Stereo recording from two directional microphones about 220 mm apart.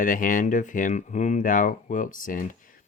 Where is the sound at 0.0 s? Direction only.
35° left (ahead or behind).